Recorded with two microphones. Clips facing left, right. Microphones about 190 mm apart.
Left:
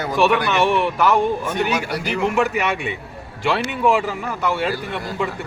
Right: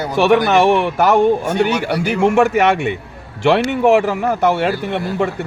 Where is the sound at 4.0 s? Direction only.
45° right (ahead or behind).